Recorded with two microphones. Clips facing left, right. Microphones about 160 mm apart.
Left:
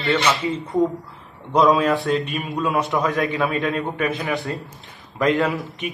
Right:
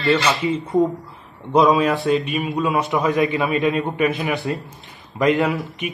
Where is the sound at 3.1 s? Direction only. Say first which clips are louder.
Right 3 dB; 20° right (ahead or behind).